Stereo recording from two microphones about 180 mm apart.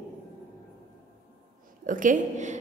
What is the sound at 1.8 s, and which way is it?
Speech, 45° right (ahead or behind).